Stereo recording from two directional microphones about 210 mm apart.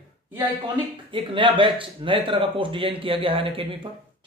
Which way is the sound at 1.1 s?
25° right (ahead or behind).